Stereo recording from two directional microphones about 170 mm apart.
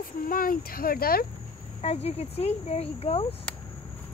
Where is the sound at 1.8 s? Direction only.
35° left (ahead or behind).